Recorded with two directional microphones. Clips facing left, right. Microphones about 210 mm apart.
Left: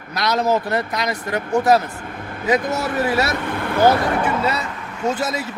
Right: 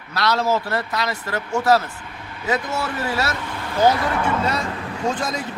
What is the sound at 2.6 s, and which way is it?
Speech, 45° left (ahead or behind).